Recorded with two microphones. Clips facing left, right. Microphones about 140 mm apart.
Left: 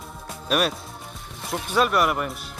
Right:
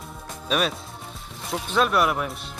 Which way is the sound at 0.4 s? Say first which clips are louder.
Left 1 dB; 5° left (ahead or behind).